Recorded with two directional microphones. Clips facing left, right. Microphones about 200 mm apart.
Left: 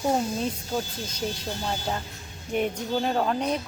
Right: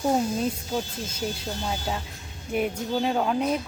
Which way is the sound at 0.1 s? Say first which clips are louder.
Right 2 dB; centre (ahead or behind).